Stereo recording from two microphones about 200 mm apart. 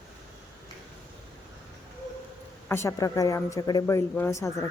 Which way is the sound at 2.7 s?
15° left (ahead or behind).